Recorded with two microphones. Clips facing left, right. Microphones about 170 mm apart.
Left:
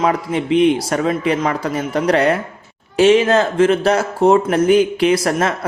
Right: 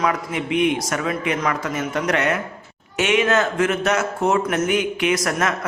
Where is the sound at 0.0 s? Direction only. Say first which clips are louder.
Left 5 dB; 30° left (ahead or behind).